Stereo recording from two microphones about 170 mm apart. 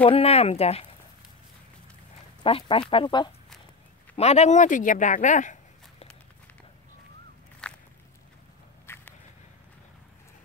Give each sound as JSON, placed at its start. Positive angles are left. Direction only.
{"t": 0.0, "sound": "speech", "side_deg": 35}
{"t": 2.4, "sound": "speech", "side_deg": 30}
{"t": 4.2, "sound": "speech", "side_deg": 40}
{"t": 7.6, "sound": "walk", "side_deg": 5}
{"t": 8.8, "sound": "a sound", "side_deg": 15}